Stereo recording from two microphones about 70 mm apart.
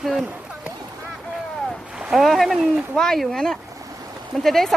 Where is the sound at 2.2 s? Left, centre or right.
Centre.